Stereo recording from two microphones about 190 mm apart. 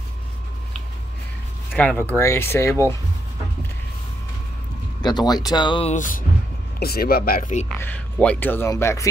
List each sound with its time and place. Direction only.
1.8 s speech: 5° left (ahead or behind)
5.0 s speech: 20° left (ahead or behind)
5.9 s speech: 45° left (ahead or behind)
7.8 s speech: 5° left (ahead or behind)